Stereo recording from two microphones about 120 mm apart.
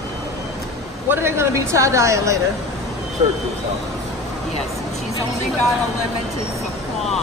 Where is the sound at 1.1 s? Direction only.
20° right (ahead or behind).